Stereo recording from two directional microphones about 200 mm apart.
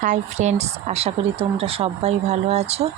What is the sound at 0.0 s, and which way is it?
A woman's voice, 35° right (ahead or behind).